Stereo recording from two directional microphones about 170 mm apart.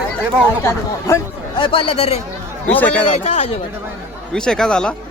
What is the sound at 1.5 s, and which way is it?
Speech, 30° left (ahead or behind).